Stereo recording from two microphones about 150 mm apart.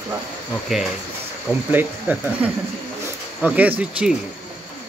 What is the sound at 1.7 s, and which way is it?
Speech, 10° right (ahead or behind).